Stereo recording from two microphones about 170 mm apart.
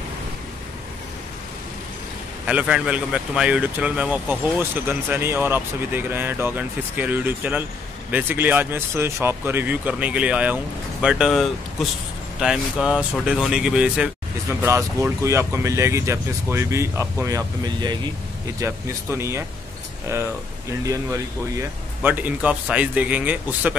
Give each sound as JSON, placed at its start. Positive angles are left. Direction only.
{"t": 2.4, "sound": "speech", "side_deg": -5}
{"t": 14.6, "sound": "speech", "side_deg": -15}
{"t": 20.8, "sound": "speech", "side_deg": -20}